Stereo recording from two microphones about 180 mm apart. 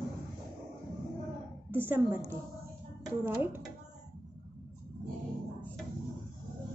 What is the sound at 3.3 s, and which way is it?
Speech, 10° right (ahead or behind).